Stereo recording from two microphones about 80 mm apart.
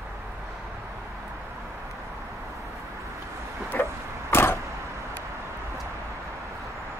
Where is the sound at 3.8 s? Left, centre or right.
Left.